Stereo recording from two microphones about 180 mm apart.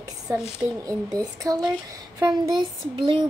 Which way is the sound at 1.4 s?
20° right (ahead or behind).